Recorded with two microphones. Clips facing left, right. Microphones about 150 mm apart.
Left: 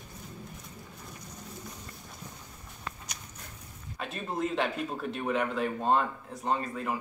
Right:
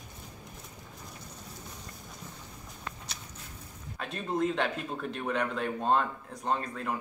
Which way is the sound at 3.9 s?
Centre (ahead or behind).